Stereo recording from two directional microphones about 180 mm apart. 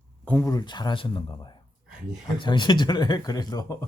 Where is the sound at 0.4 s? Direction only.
20° left (ahead or behind).